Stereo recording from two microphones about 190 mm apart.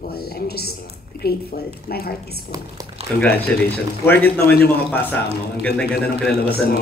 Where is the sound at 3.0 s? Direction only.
35° right (ahead or behind).